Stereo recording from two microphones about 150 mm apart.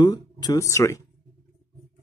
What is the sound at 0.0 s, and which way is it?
Speech, 25° left (ahead or behind).